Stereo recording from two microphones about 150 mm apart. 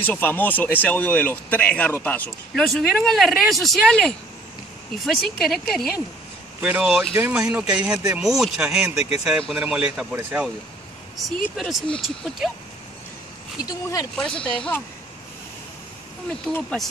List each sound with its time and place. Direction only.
0.0 s speech: 10° left (ahead or behind)
6.6 s speech: 10° right (ahead or behind)
13.6 s speech: 25° left (ahead or behind)
14.1 s speech: 5° left (ahead or behind)
16.3 s speech: 5° left (ahead or behind)